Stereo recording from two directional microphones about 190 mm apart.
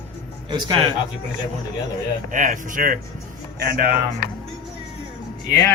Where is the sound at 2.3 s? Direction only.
45° right (ahead or behind).